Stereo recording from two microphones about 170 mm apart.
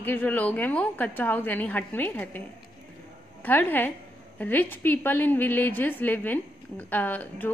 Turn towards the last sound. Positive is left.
turn(degrees=10)  # may be behind; listen again after turning